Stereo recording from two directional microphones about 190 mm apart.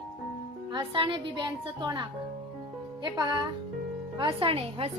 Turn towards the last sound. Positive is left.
turn(degrees=-30)  # may be behind; listen again after turning